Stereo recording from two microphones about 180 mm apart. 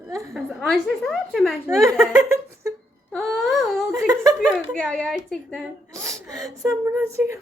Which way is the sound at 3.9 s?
15° right (ahead or behind).